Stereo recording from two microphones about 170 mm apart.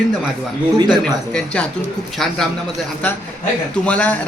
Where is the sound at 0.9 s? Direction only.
5° left (ahead or behind).